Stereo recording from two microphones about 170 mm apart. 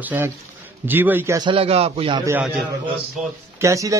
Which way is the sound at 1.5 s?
35° right (ahead or behind).